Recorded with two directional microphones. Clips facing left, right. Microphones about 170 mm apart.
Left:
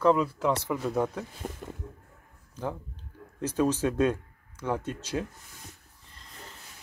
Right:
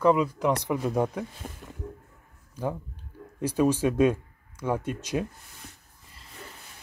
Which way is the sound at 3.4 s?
10° right (ahead or behind).